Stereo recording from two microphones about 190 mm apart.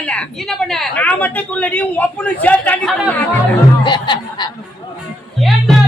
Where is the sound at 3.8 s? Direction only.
25° left (ahead or behind).